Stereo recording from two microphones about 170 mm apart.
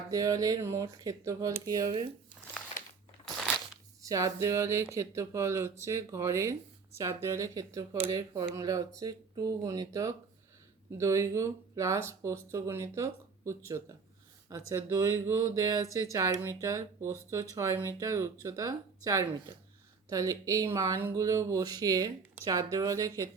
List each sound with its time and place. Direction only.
0.1 s speech: 20° right (ahead or behind)
4.0 s speech: 20° right (ahead or behind)